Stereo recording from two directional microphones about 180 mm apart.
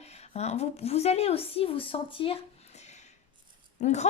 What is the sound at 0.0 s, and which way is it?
A woman's voice, 35° left (ahead or behind).